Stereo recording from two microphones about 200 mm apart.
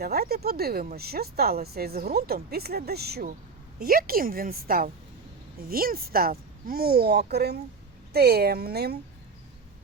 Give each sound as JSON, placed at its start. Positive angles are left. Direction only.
{"t": 0.0, "sound": "speech", "side_deg": -50}